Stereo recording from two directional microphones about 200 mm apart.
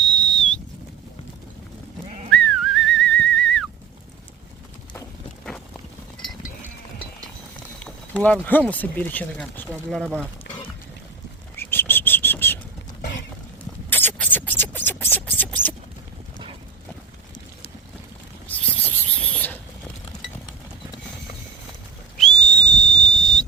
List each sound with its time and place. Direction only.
0.0 s whistle: 5° left (ahead or behind)
2.3 s whistling: 5° left (ahead or behind)
7.9 s speech: 5° left (ahead or behind)
10.5 s pour: 55° left (ahead or behind)
11.5 s bird: 10° left (ahead or behind)
13.9 s a sound: 10° left (ahead or behind)
18.4 s a sound: 5° left (ahead or behind)
22.2 s whistle: 5° left (ahead or behind)